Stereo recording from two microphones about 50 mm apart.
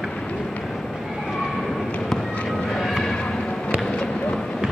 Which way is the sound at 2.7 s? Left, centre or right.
Centre.